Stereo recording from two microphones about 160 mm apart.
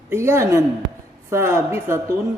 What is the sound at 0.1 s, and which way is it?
A man's voice, 15° right (ahead or behind).